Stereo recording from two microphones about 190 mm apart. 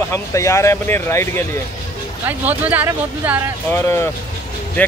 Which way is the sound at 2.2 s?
10° right (ahead or behind).